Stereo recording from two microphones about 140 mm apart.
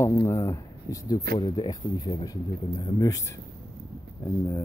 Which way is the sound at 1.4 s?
35° left (ahead or behind).